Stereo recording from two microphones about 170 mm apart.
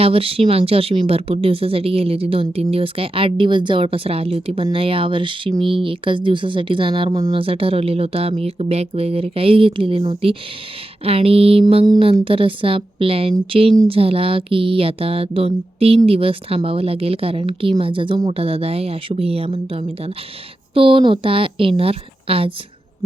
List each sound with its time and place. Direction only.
0.0 s speech: 35° right (ahead or behind)